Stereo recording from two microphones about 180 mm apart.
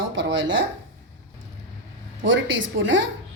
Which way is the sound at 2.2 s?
90° right.